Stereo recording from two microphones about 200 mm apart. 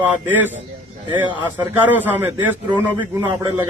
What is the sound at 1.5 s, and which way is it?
A man's voice, 10° right (ahead or behind).